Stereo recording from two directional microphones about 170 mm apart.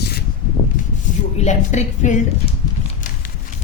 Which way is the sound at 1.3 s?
40° left (ahead or behind).